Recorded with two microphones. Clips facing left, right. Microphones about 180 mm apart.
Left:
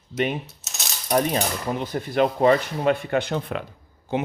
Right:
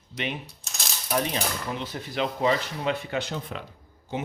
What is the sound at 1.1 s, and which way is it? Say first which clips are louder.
A man's voice: left 5 dB; 45° left (ahead or behind).